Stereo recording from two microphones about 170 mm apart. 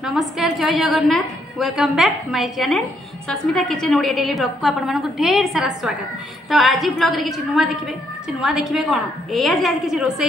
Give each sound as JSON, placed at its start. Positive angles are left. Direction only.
{"t": 0.0, "sound": "a woman's voice", "side_deg": 0}